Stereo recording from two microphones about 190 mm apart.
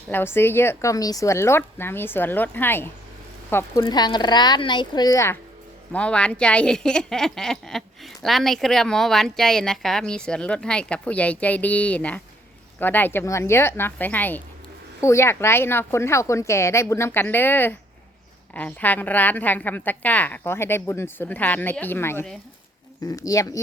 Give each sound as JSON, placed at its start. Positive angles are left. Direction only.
{"t": 0.1, "sound": "a woman's voice", "side_deg": 10}
{"t": 3.8, "sound": "a woman's voice", "side_deg": 20}